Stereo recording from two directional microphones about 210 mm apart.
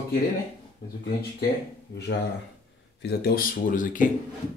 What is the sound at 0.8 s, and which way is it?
Speech, 50° left (ahead or behind).